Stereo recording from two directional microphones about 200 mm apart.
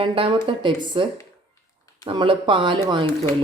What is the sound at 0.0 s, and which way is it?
Speech, 25° right (ahead or behind).